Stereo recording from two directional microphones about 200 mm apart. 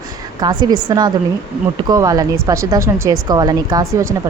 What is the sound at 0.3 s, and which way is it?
A woman's voice, 20° right (ahead or behind).